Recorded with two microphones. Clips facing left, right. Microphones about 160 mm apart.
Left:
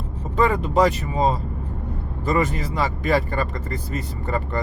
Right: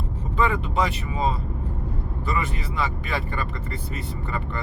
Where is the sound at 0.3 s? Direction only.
40° left (ahead or behind).